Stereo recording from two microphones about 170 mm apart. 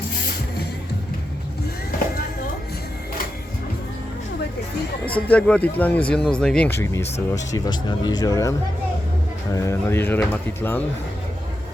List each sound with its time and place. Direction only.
5.0 s speech: 10° left (ahead or behind)